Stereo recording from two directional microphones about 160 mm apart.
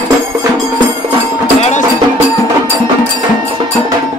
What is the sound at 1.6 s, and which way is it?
Music, 45° left (ahead or behind).